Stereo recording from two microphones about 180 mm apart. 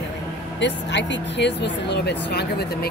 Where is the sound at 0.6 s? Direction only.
80° left.